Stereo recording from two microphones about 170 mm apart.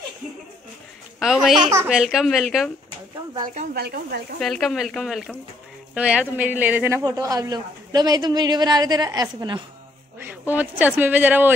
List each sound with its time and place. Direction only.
1.2 s speech: centre (ahead or behind)
3.7 s speech: 70° right (ahead or behind)
4.4 s speech: centre (ahead or behind); by 9.6 s 25° right (ahead or behind)
10.1 s a woman's voice: 10° right (ahead or behind)